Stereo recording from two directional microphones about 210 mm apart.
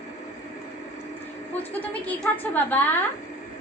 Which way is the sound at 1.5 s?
10° left (ahead or behind).